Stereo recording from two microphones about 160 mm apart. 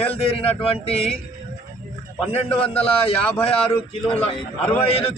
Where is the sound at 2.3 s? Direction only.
35° left (ahead or behind).